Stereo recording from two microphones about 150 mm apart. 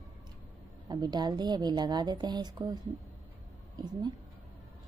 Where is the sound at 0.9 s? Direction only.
30° right (ahead or behind).